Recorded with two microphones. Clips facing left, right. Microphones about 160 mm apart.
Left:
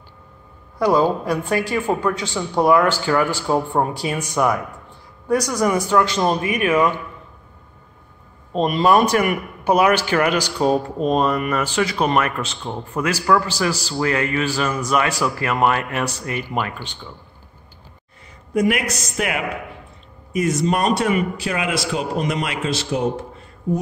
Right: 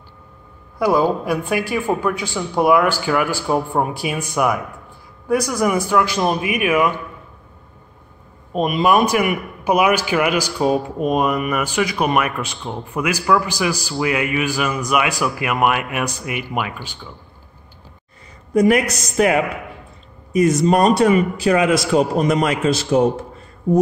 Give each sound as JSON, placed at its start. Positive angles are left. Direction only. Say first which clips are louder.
{"t": 0.7, "sound": "a man's voice", "louder": "even", "side_deg": -10}
{"t": 8.8, "sound": "a man's voice", "louder": "even", "side_deg": -10}
{"t": 18.5, "sound": "a man's voice", "louder": "right 5 dB", "side_deg": -40}